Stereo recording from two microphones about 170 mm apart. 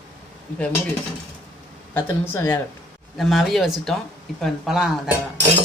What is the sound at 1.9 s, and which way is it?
Speech, 15° left (ahead or behind).